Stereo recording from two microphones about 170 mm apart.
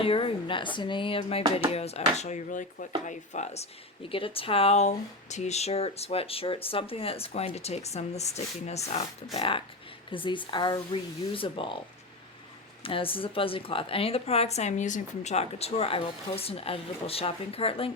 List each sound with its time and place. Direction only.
0.0 s speech: 35° left (ahead or behind)
12.8 s speech: 30° left (ahead or behind)